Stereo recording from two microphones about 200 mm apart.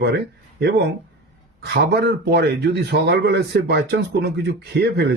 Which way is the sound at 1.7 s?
55° right (ahead or behind).